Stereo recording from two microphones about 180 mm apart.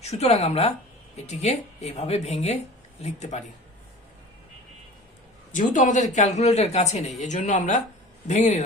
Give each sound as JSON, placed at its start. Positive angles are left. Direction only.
{"t": 0.0, "sound": "a man's voice", "side_deg": 35}
{"t": 5.5, "sound": "a man's voice", "side_deg": 45}